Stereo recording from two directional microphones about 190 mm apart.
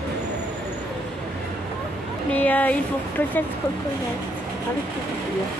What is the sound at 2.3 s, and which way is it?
Speech, 10° left (ahead or behind).